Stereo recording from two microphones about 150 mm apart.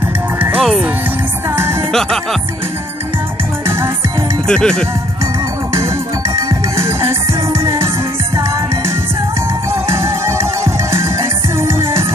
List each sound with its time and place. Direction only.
0.4 s music: 10° right (ahead or behind)
1.9 s speech: 5° left (ahead or behind)
4.5 s music: 5° left (ahead or behind)
6.8 s music: 15° right (ahead or behind)
9.8 s music: 15° right (ahead or behind)